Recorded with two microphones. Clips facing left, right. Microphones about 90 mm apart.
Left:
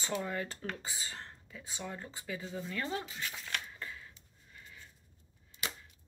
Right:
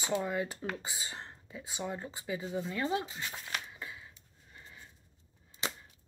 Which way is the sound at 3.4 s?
10° right (ahead or behind).